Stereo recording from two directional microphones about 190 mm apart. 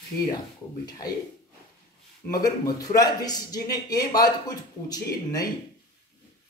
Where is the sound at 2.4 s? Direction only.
20° left (ahead or behind).